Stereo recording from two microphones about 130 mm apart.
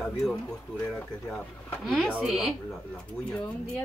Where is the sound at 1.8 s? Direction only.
Centre (ahead or behind).